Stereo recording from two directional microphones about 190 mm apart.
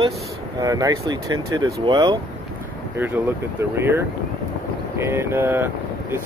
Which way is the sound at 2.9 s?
10° right (ahead or behind).